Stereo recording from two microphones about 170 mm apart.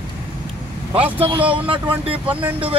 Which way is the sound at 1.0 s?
30° right (ahead or behind).